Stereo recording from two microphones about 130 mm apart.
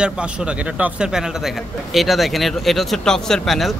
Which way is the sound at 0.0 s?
10° right (ahead or behind).